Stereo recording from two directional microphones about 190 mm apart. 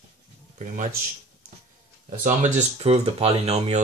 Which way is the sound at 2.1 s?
40° right (ahead or behind).